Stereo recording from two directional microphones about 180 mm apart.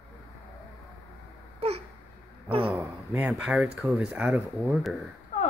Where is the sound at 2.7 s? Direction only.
15° right (ahead or behind).